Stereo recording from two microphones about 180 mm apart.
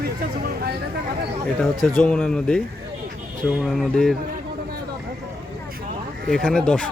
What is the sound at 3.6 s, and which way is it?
Speech, centre (ahead or behind).